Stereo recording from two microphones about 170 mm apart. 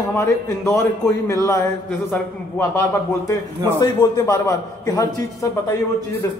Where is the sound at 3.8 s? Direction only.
20° left (ahead or behind).